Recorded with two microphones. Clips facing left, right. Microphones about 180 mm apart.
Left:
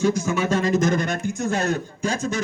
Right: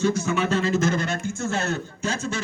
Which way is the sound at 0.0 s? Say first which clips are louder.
Left 1 dB; 10° left (ahead or behind).